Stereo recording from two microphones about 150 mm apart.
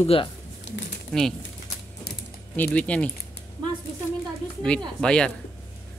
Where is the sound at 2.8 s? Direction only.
10° left (ahead or behind).